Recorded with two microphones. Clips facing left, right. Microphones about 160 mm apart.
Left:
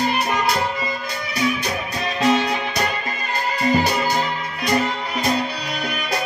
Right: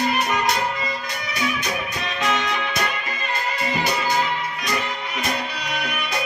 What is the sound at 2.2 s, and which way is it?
Music, 35° left (ahead or behind).